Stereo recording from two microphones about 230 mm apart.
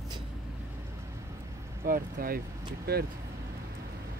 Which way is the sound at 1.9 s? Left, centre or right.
Right.